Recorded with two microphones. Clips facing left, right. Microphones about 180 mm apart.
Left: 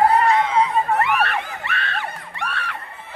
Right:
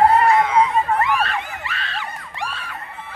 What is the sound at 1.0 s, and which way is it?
Screaming, 65° left (ahead or behind).